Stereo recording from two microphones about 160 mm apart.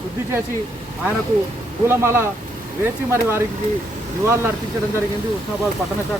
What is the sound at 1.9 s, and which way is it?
Speech, 15° right (ahead or behind).